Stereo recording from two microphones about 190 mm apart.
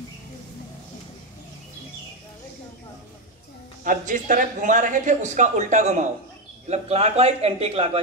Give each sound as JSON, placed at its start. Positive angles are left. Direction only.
{"t": 3.8, "sound": "speech", "side_deg": -45}